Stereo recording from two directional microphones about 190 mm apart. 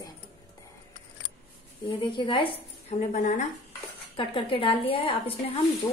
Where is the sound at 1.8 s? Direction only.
25° left (ahead or behind).